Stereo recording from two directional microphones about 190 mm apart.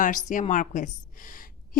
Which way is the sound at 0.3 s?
40° left (ahead or behind).